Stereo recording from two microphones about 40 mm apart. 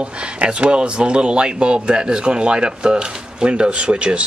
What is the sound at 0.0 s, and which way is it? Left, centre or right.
Speech, right.